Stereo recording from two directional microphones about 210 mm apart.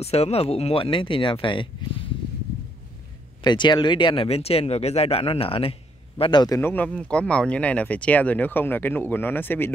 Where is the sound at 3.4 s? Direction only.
20° left (ahead or behind).